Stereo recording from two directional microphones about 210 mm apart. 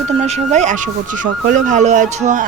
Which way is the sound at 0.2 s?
30° right (ahead or behind).